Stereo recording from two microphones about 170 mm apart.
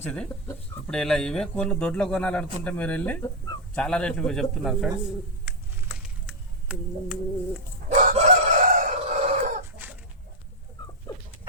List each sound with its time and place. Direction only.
0.0 s a man's voice: 5° left (ahead or behind)
7.9 s chicken: 45° right (ahead or behind)